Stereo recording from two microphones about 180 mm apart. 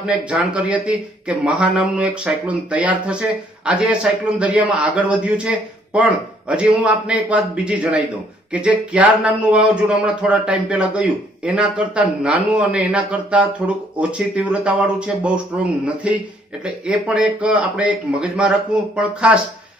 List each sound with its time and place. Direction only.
0.0 s speech: 5° right (ahead or behind)